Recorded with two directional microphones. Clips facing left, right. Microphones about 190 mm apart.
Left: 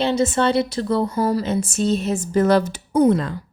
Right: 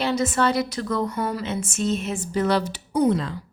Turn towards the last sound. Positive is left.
turn(degrees=50)  # may be behind; listen again after turning